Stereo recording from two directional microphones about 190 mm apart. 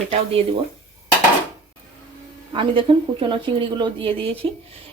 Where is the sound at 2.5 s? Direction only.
25° right (ahead or behind).